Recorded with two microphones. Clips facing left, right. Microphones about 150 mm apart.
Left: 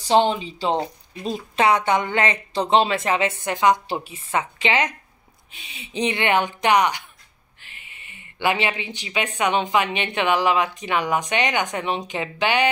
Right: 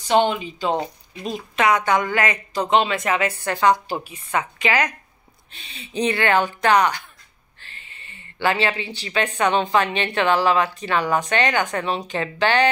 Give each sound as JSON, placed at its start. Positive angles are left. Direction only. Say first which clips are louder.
{"t": 0.1, "sound": "speech", "louder": "even", "side_deg": 30}
{"t": 5.5, "sound": "speech", "louder": "right 1 dB", "side_deg": 15}